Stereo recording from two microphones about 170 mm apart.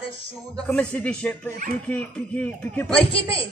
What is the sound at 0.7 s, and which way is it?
Speech, 10° left (ahead or behind).